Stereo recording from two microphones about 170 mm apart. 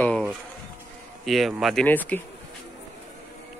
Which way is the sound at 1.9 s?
10° left (ahead or behind).